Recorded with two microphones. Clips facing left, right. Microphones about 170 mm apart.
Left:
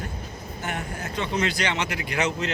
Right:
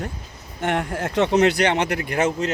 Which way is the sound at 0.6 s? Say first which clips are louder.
Right 9 dB; 85° right.